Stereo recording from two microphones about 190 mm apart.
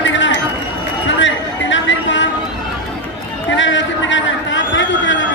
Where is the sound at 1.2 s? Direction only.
80° left.